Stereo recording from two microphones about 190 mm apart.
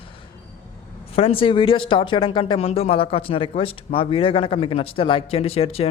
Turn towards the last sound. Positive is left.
turn(degrees=30)  # may be behind; listen again after turning